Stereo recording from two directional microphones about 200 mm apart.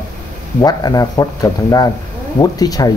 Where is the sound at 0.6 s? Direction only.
20° left (ahead or behind).